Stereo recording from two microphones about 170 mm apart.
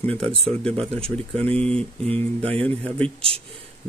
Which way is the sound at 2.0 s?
35° right (ahead or behind).